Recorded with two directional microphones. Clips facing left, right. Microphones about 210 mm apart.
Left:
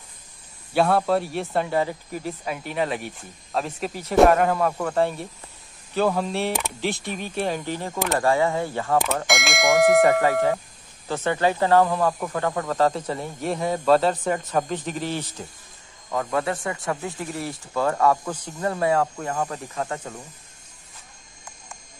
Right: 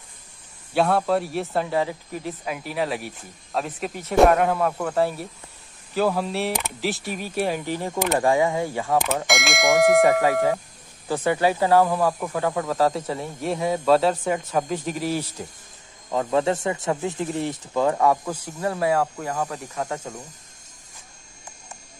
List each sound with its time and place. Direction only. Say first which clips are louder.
0.7 s speech: even; centre (ahead or behind)
8.9 s speech: even; centre (ahead or behind)
16.1 s speech: right 3 dB; 25° right (ahead or behind); by 19.8 s centre (ahead or behind)
19.8 s speech: right 1 dB; 10° right (ahead or behind)